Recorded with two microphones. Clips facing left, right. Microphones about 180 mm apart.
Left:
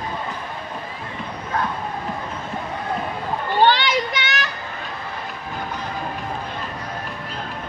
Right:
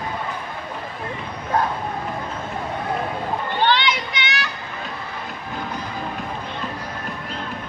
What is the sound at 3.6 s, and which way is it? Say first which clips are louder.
Children playing: left 4 dB; 40° left (ahead or behind).